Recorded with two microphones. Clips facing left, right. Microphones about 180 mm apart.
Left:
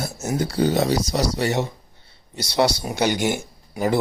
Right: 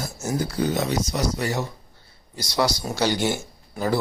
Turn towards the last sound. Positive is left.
turn(degrees=15)  # may be behind; listen again after turning